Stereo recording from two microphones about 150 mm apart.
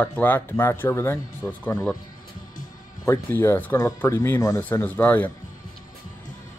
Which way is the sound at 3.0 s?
15° left (ahead or behind).